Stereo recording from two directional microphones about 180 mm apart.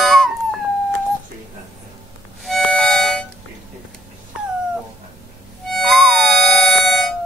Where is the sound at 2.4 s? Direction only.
5° left (ahead or behind).